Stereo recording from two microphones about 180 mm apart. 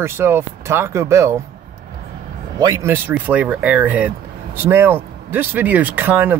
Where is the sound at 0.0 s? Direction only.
15° right (ahead or behind).